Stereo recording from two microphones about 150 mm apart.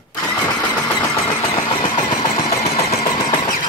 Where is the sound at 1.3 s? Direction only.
25° left (ahead or behind).